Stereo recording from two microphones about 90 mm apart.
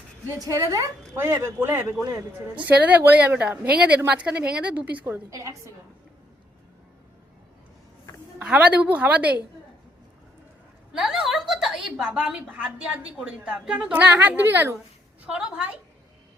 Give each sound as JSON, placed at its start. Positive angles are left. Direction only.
{"t": 0.3, "sound": "a woman's voice", "side_deg": -35}
{"t": 2.6, "sound": "a woman's voice", "side_deg": -15}
{"t": 5.3, "sound": "a woman's voice", "side_deg": -35}
{"t": 8.4, "sound": "a woman's voice", "side_deg": -15}
{"t": 10.9, "sound": "a woman's voice", "side_deg": -5}
{"t": 15.3, "sound": "a woman's voice", "side_deg": -10}